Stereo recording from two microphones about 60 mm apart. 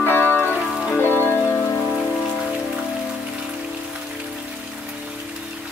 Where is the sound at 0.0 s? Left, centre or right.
Left.